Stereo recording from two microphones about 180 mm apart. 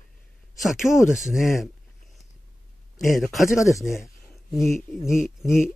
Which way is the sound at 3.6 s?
15° left (ahead or behind).